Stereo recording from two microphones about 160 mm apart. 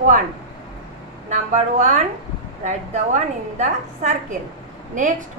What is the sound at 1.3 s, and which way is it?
A woman's voice, 45° right (ahead or behind).